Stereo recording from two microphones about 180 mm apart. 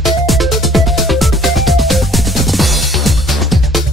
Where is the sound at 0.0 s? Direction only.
Centre (ahead or behind).